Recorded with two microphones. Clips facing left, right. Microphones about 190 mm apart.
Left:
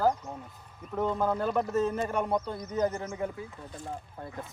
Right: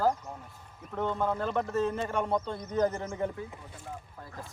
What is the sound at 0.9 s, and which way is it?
Speech, 5° left (ahead or behind).